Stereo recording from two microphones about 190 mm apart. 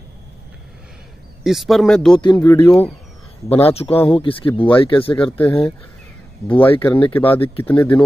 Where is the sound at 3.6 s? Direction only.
30° left (ahead or behind).